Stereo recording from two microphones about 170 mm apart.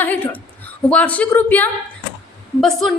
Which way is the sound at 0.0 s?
10° left (ahead or behind).